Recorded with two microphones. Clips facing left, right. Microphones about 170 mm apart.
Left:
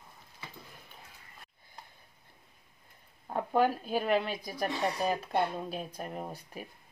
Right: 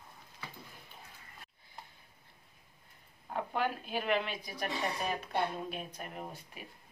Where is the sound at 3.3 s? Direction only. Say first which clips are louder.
Left 7 dB; 40° left (ahead or behind).